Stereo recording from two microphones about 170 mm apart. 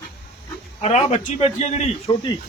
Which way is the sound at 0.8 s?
40° left (ahead or behind).